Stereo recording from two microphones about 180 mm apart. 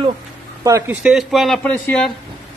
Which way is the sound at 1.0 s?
Centre (ahead or behind).